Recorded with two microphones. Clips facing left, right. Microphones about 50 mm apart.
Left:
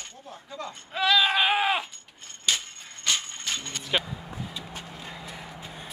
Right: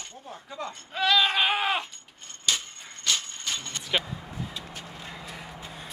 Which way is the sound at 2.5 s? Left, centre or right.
Centre.